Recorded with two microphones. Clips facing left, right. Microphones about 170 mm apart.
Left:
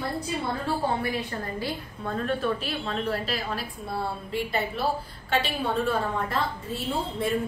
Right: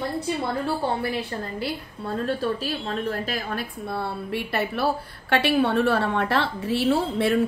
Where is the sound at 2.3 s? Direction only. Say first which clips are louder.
Right 1 dB; 40° right (ahead or behind).